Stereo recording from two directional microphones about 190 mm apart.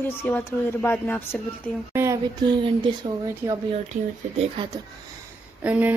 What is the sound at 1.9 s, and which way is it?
Speech, 15° right (ahead or behind).